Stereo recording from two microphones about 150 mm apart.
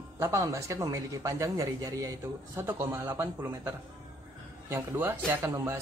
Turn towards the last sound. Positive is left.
turn(degrees=-20)  # may be behind; listen again after turning